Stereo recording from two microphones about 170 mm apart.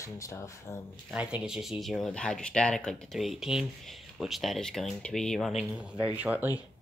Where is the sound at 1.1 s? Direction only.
5° right (ahead or behind).